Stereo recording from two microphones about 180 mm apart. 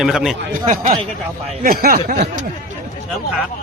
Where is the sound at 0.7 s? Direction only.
45° right (ahead or behind).